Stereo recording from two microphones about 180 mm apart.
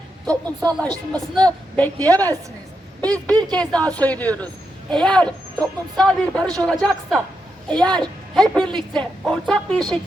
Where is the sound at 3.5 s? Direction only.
5° left (ahead or behind).